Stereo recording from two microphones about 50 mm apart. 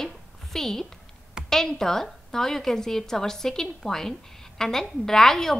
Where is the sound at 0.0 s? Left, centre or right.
Centre.